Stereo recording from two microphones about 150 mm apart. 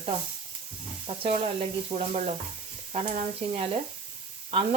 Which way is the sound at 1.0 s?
40° right (ahead or behind).